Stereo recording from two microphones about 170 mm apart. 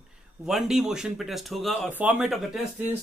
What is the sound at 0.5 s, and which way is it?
Speech, centre (ahead or behind).